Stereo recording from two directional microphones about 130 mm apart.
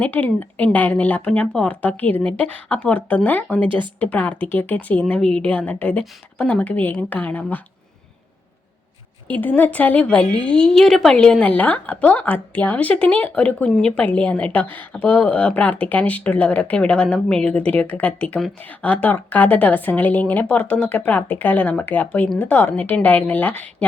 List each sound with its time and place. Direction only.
0.0 s a woman's voice: 10° left (ahead or behind)
9.2 s a woman's voice: 15° left (ahead or behind)